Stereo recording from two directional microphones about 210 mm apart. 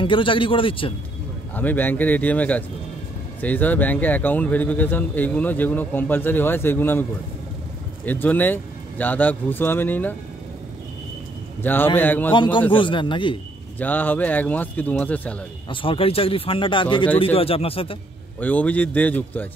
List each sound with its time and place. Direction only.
0.0 s speech: 25° left (ahead or behind)
1.5 s speech: 10° left (ahead or behind)
11.6 s speech: 10° left (ahead or behind)
12.7 s speech: 25° left (ahead or behind)
13.7 s speech: 10° left (ahead or behind)
15.7 s speech: 25° left (ahead or behind)
18.4 s speech: 5° left (ahead or behind)